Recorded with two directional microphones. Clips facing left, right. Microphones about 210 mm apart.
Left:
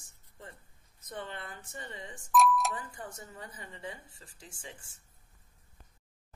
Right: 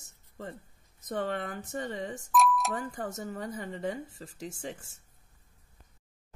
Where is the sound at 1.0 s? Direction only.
70° right (ahead or behind).